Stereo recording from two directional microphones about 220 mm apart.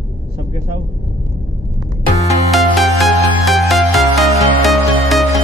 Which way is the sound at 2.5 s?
Centre (ahead or behind).